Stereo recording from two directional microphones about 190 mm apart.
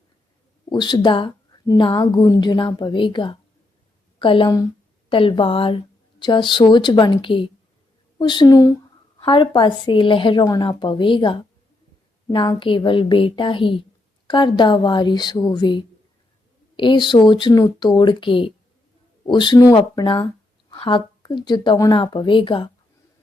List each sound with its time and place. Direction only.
0.7 s a woman's voice: 20° left (ahead or behind)